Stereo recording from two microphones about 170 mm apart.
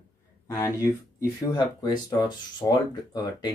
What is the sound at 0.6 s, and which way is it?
Speech, 15° left (ahead or behind).